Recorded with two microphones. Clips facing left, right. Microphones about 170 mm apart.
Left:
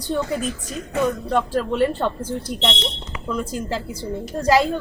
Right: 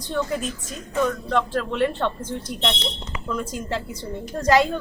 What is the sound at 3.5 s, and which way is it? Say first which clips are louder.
Speech: left 2 dB; 35° left (ahead or behind).